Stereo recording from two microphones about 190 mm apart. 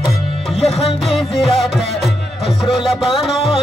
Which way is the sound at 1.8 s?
Centre (ahead or behind).